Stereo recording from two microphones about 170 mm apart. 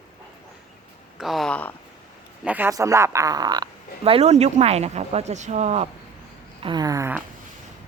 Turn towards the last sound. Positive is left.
turn(degrees=-15)  # may be behind; listen again after turning